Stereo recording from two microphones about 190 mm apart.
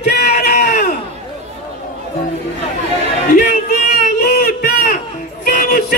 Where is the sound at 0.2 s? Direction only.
55° left (ahead or behind).